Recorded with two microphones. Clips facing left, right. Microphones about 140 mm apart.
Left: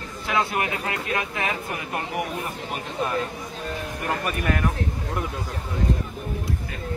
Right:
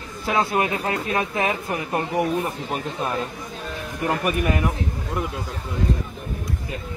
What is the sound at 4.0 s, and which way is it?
Speech, 20° right (ahead or behind).